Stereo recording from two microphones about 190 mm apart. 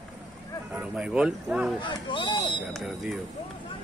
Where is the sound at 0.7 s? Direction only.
5° right (ahead or behind).